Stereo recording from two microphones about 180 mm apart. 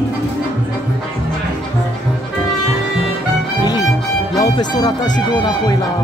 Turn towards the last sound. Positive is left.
turn(degrees=25)  # may be behind; listen again after turning